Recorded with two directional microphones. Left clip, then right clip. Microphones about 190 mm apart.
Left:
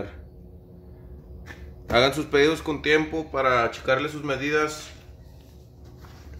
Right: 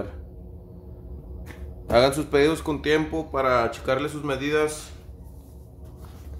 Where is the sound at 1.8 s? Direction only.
Centre (ahead or behind).